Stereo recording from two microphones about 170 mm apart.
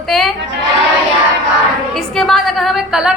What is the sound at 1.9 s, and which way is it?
A woman's voice, centre (ahead or behind).